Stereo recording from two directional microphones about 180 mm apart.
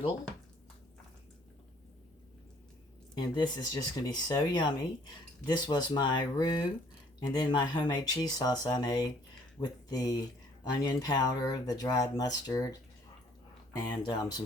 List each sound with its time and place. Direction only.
3.2 s speech: 25° left (ahead or behind)
13.7 s speech: 20° left (ahead or behind)